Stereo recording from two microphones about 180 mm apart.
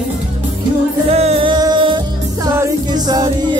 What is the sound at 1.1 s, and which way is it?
Music, 35° right (ahead or behind).